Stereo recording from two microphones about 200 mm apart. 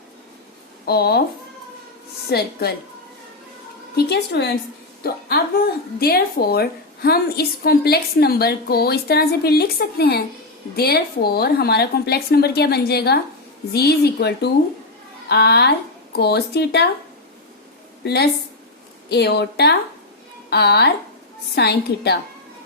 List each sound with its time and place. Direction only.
0.9 s a woman's voice: 50° left (ahead or behind)
2.3 s a woman's voice: 50° left (ahead or behind)
3.9 s a woman's voice: 55° left (ahead or behind)
18.0 s a woman's voice: 55° left (ahead or behind)